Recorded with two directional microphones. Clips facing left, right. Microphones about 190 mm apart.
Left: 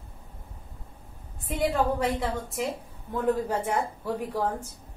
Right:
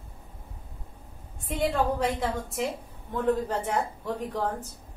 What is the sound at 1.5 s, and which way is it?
A woman's voice, centre (ahead or behind).